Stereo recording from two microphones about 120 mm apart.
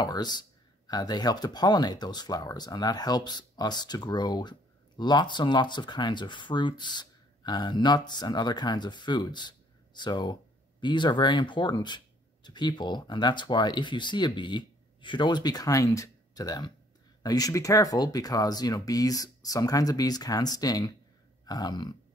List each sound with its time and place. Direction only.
0.0 s speech: 35° left (ahead or behind)